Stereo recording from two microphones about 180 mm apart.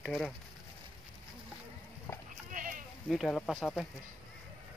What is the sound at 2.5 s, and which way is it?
Sheep, 45° right (ahead or behind).